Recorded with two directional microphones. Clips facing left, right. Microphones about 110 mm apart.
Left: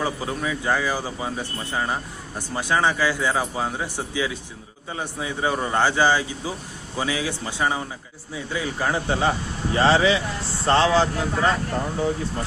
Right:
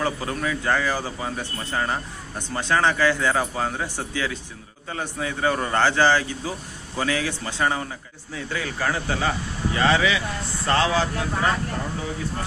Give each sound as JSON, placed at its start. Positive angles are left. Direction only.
{"t": 0.0, "sound": "a man's voice", "side_deg": 10}